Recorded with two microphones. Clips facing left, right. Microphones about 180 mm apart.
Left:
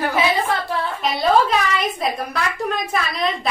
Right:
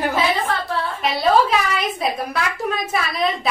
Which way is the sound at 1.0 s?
Centre (ahead or behind).